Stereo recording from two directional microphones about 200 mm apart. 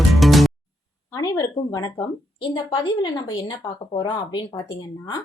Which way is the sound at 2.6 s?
20° left (ahead or behind).